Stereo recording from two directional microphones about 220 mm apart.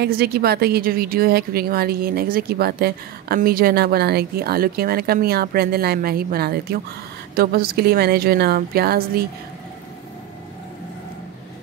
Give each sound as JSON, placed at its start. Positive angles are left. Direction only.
{"t": 0.0, "sound": "speech", "side_deg": -45}